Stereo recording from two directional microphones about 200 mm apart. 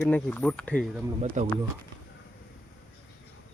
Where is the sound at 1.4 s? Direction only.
35° right (ahead or behind).